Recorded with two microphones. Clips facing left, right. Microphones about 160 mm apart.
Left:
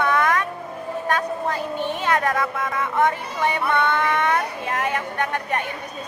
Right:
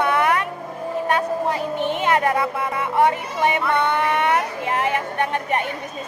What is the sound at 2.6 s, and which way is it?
Speech, 15° right (ahead or behind).